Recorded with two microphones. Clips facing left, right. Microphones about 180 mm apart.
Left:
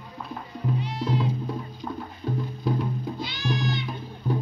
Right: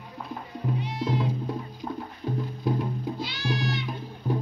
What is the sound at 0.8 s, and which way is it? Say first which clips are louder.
Music: even; 20° right (ahead or behind).